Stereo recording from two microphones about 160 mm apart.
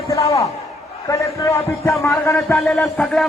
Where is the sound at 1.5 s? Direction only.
15° left (ahead or behind).